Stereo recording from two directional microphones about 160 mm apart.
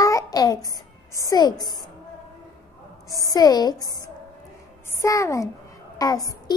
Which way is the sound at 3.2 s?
20° left (ahead or behind).